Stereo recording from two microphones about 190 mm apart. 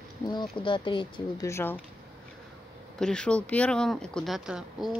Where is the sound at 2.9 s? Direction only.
5° left (ahead or behind).